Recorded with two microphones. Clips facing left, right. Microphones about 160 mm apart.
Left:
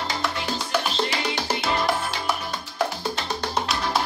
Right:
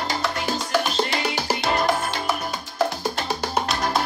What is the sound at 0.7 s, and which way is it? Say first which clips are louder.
Music: right 2 dB; 5° right (ahead or behind).